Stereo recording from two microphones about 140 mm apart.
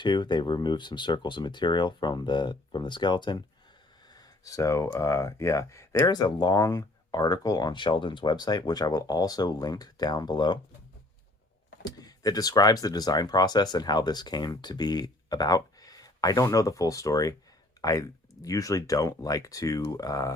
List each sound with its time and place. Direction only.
0.0 s speech: 35° left (ahead or behind)
11.9 s speech: 25° left (ahead or behind)
17.7 s a sound: 25° left (ahead or behind)
18.4 s speech: 25° left (ahead or behind)